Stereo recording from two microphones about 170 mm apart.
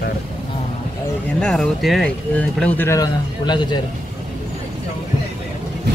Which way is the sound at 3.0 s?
25° left (ahead or behind).